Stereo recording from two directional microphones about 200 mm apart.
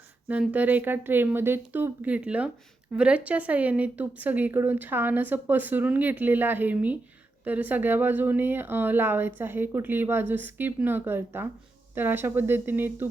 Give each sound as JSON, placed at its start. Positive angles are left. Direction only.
{"t": 0.3, "sound": "a woman's voice", "side_deg": -10}